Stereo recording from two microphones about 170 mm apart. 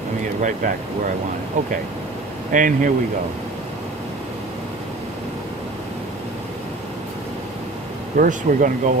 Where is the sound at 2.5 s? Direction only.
50° right (ahead or behind).